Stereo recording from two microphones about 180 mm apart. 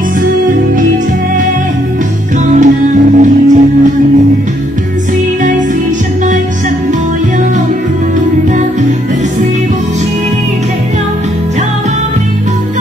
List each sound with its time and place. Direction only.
2.5 s music: 45° right (ahead or behind)